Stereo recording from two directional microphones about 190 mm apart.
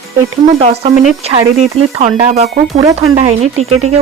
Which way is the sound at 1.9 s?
35° right (ahead or behind).